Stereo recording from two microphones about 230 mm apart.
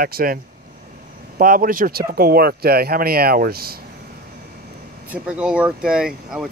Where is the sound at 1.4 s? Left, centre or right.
Right.